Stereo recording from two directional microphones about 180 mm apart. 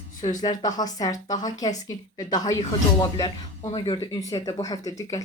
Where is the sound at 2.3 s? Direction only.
20° left (ahead or behind).